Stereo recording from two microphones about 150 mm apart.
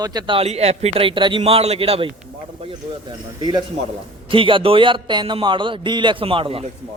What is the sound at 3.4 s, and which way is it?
A man's voice, 30° right (ahead or behind).